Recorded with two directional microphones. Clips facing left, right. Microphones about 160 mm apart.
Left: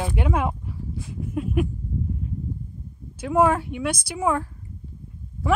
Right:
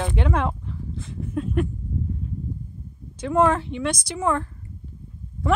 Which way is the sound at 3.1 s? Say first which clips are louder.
Even; 10° left (ahead or behind).